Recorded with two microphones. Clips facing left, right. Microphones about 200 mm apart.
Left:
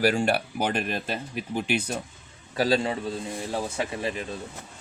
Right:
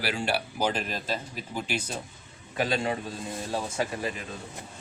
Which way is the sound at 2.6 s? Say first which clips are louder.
Left 5 dB; 35° left (ahead or behind).